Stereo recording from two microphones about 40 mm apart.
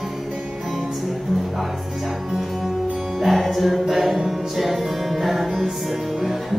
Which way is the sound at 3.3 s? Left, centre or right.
Centre.